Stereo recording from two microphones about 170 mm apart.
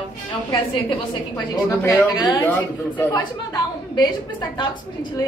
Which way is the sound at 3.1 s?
25° left (ahead or behind).